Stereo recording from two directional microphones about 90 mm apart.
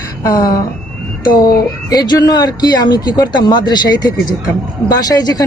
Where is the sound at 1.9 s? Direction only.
45° left (ahead or behind).